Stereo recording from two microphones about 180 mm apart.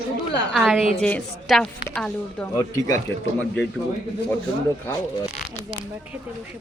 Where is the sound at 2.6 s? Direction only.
20° left (ahead or behind).